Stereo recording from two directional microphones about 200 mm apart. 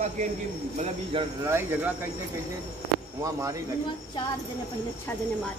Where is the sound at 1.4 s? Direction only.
10° right (ahead or behind).